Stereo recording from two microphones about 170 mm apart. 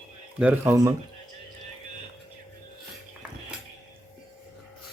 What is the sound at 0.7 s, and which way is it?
Speech, 20° right (ahead or behind).